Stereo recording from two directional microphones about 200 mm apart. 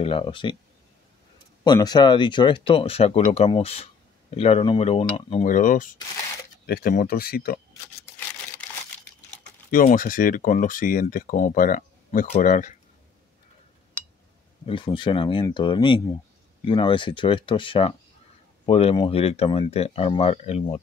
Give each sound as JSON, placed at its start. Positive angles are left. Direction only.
{"t": 0.0, "sound": "speech", "side_deg": 25}
{"t": 1.6, "sound": "speech", "side_deg": 20}
{"t": 9.7, "sound": "speech", "side_deg": 45}
{"t": 14.7, "sound": "speech", "side_deg": 25}